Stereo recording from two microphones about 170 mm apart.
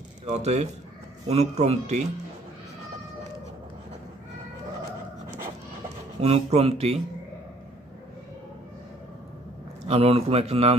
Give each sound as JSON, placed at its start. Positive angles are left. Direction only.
{"t": 0.2, "sound": "a man's voice", "side_deg": -40}
{"t": 6.2, "sound": "a man's voice", "side_deg": -35}
{"t": 9.8, "sound": "a man's voice", "side_deg": -35}